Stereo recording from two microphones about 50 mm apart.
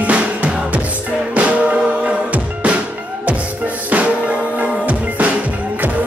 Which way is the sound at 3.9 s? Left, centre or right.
Right.